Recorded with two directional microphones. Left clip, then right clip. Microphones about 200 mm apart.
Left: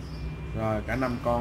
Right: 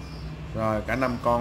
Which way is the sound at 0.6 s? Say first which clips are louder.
Right 3 dB; 20° right (ahead or behind).